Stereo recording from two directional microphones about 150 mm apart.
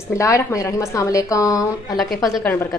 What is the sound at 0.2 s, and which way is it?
A woman's voice, 20° left (ahead or behind).